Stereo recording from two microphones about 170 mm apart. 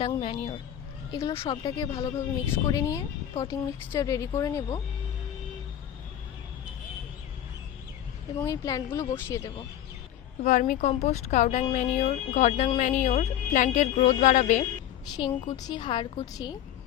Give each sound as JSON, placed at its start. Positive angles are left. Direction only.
{"t": 0.0, "sound": "speech", "side_deg": 30}
{"t": 8.4, "sound": "speech", "side_deg": 20}
{"t": 10.4, "sound": "speech", "side_deg": 50}
{"t": 15.1, "sound": "speech", "side_deg": 30}